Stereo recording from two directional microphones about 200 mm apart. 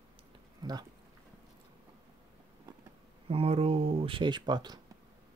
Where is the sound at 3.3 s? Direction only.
30° right (ahead or behind).